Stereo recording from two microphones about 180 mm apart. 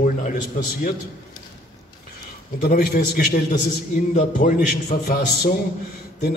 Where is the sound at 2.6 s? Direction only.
60° left (ahead or behind).